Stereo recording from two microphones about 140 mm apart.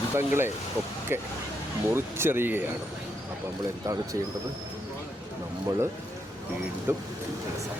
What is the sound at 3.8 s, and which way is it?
Speech, 25° right (ahead or behind).